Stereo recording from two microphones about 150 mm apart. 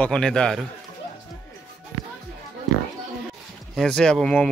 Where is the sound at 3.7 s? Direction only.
5° left (ahead or behind).